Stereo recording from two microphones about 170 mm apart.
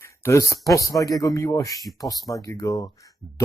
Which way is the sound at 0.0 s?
15° left (ahead or behind).